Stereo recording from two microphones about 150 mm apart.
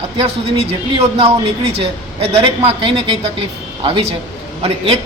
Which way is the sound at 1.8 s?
40° right (ahead or behind).